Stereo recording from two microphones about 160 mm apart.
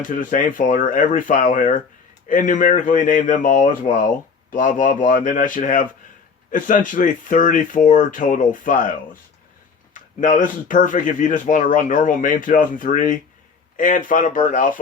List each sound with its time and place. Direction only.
0.1 s speech: 55° left (ahead or behind)
9.9 s speech: 55° left (ahead or behind)